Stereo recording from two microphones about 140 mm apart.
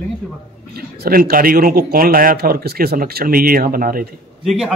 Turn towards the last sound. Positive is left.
turn(degrees=0)  # may be behind; listen again after turning